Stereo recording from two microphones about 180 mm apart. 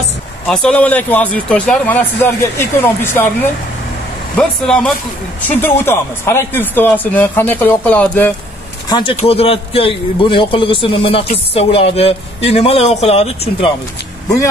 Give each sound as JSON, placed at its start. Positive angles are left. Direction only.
{"t": 0.5, "sound": "speech", "side_deg": 5}
{"t": 4.4, "sound": "speech", "side_deg": 5}
{"t": 8.8, "sound": "a man's voice", "side_deg": 25}